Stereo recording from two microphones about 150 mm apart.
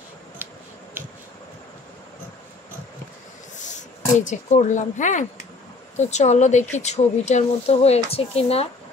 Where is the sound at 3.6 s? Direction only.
55° left (ahead or behind).